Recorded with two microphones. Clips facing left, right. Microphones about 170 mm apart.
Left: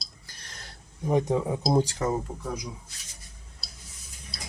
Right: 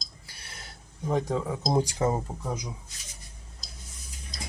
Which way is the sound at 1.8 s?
15° right (ahead or behind).